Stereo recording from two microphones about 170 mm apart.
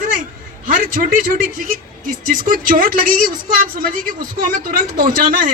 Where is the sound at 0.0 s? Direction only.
50° right (ahead or behind).